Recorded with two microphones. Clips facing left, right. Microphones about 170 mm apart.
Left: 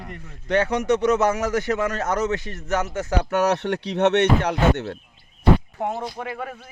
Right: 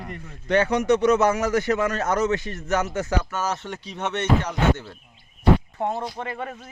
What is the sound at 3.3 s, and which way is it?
Speech, 65° left (ahead or behind).